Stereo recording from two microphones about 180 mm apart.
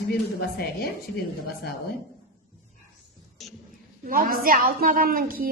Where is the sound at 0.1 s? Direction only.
60° left (ahead or behind).